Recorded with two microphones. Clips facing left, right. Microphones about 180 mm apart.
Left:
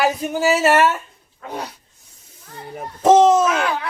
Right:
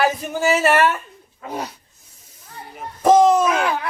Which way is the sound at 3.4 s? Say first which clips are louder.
Even; 10° right (ahead or behind).